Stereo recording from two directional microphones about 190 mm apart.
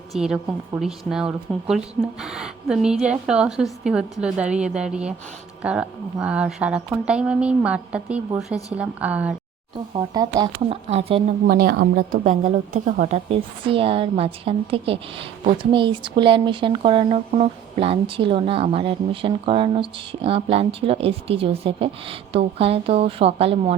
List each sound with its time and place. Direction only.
0.1 s speech: 5° right (ahead or behind)
9.9 s a woman's voice: 20° right (ahead or behind)
10.8 s a woman's voice: 35° right (ahead or behind)
11.4 s a woman's voice: 55° right (ahead or behind); by 23.7 s 30° right (ahead or behind)